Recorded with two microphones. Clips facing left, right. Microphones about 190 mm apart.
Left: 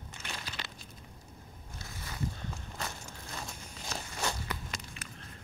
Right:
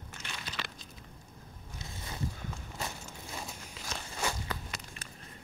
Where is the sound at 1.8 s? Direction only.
20° right (ahead or behind).